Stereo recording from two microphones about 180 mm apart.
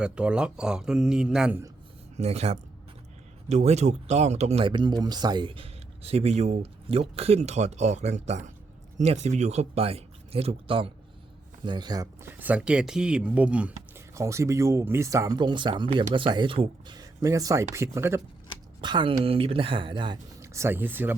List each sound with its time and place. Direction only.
0.0 s speech: 5° right (ahead or behind)
2.1 s speech: 35° right (ahead or behind); by 18.2 s 15° right (ahead or behind)
18.8 s speech: 25° right (ahead or behind)
20.4 s speech: 15° right (ahead or behind)